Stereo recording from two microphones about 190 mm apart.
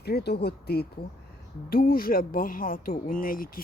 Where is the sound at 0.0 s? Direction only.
60° left (ahead or behind).